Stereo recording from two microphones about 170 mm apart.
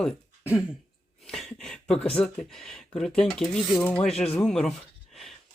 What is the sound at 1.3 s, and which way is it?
Speech, centre (ahead or behind).